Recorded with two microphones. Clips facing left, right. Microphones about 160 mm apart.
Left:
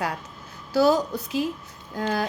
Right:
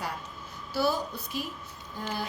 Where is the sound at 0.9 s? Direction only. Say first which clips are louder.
Left 9 dB; 90° left.